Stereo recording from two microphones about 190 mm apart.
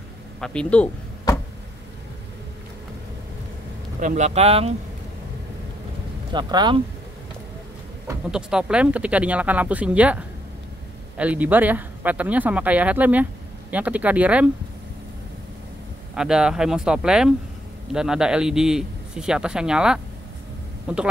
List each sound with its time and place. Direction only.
0.4 s speech: 5° left (ahead or behind)
4.0 s speech: 40° right (ahead or behind)
6.3 s speech: 25° right (ahead or behind)
8.3 s speech: 5° right (ahead or behind)
16.2 s speech: 5° right (ahead or behind)